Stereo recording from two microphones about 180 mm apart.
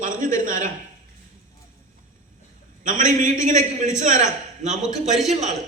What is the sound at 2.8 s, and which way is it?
A man's voice, 45° right (ahead or behind).